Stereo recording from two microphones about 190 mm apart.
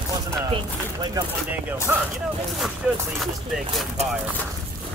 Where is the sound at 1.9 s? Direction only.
10° right (ahead or behind).